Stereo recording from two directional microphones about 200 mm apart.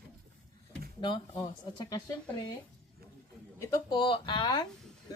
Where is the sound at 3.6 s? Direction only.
25° left (ahead or behind).